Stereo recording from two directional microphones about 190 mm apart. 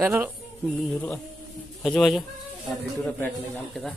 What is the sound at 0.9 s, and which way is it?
A man's voice, 10° left (ahead or behind).